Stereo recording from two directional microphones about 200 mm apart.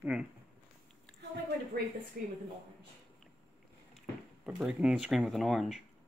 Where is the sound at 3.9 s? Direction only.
Centre (ahead or behind).